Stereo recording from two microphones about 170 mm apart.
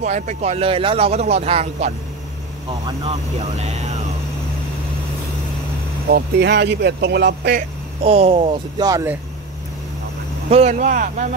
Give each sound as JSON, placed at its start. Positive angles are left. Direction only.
{"t": 0.0, "sound": "speech", "side_deg": -40}
{"t": 6.0, "sound": "speech", "side_deg": -75}
{"t": 8.0, "sound": "speech", "side_deg": -35}
{"t": 8.8, "sound": "speech", "side_deg": -20}
{"t": 10.5, "sound": "speech", "side_deg": -45}